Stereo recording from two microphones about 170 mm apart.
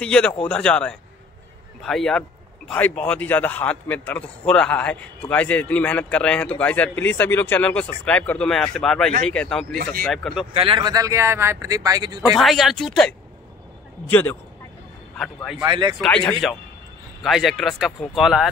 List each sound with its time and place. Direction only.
0.0 s a man's voice: 5° left (ahead or behind)
10.5 s speech: 30° right (ahead or behind)
12.4 s speech: centre (ahead or behind)
15.1 s speech: centre (ahead or behind)
15.6 s speech: 25° right (ahead or behind)
16.0 s speech: 5° left (ahead or behind)